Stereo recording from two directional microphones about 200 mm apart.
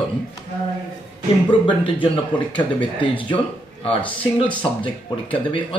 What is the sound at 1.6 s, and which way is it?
Speech, 25° left (ahead or behind).